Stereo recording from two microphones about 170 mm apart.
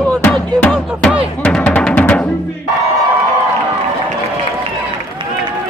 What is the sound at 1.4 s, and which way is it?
Music, 10° left (ahead or behind).